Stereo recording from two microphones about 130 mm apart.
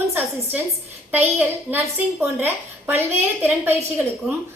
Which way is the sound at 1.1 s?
15° right (ahead or behind).